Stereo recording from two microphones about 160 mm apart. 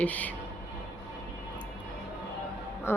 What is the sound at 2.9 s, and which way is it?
Speech, 15° left (ahead or behind).